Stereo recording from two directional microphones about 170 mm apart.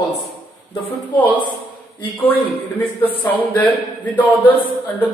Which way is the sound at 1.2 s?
10° left (ahead or behind).